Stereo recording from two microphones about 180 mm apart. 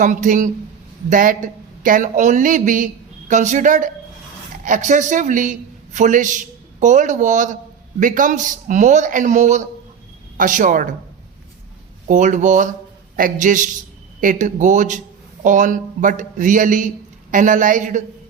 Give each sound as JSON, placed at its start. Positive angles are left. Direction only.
{"t": 0.0, "sound": "a man's voice", "side_deg": -45}
{"t": 12.0, "sound": "a man's voice", "side_deg": -45}